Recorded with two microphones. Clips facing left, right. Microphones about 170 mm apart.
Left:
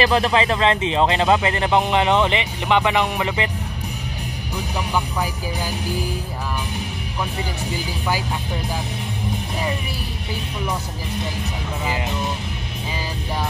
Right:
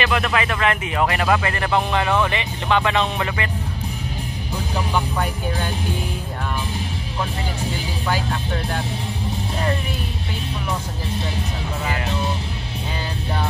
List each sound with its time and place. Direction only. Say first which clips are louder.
0.0 s speech: left 4 dB; 30° left (ahead or behind)
4.9 s speech: even; 5° left (ahead or behind)
8.1 s speech: right 1 dB; 10° left (ahead or behind)